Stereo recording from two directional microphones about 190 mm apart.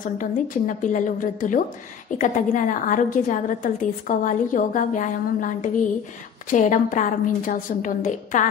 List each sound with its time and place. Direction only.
0.0 s a woman's voice: 45° left (ahead or behind)